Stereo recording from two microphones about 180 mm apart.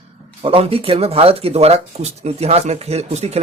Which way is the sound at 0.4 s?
30° right (ahead or behind).